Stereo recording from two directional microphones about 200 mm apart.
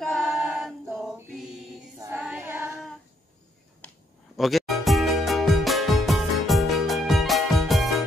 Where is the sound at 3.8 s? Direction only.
Centre (ahead or behind).